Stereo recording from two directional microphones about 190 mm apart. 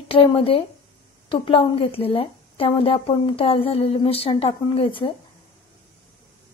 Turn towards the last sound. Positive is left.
turn(degrees=25)  # may be behind; listen again after turning